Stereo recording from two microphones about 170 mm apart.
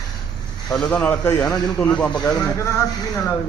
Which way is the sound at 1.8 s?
5° left (ahead or behind).